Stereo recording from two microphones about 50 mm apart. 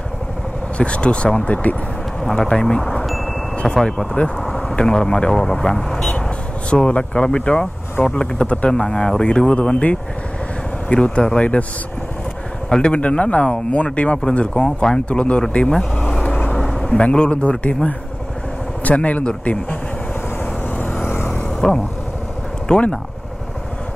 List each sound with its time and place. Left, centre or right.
0.7 s speech: left
2.6 s speech: centre
6.7 s speech: centre
12.6 s speech: centre
15.5 s vehicle: left
16.5 s vehicle: centre
17.0 s speech: left
18.9 s speech: left
20.7 s vehicle: left
21.5 s speech: centre